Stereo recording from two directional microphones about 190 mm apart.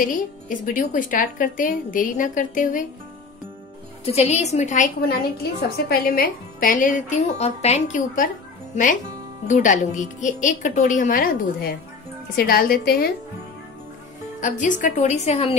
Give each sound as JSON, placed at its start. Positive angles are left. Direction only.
{"t": 0.0, "sound": "speech", "side_deg": 45}
{"t": 4.0, "sound": "a woman's voice", "side_deg": 35}
{"t": 9.5, "sound": "a woman's voice", "side_deg": 40}
{"t": 14.4, "sound": "a woman's voice", "side_deg": 40}